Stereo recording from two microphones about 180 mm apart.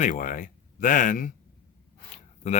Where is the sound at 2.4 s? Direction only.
40° left (ahead or behind).